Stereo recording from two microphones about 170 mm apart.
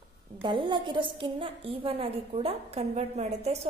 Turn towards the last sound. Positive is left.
turn(degrees=-40)  # may be behind; listen again after turning